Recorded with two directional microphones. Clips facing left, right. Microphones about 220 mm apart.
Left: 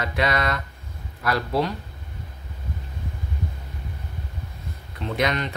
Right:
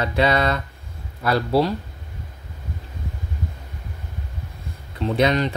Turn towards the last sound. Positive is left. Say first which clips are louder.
# right 5 dB
turn(degrees=-30)  # may be behind; listen again after turning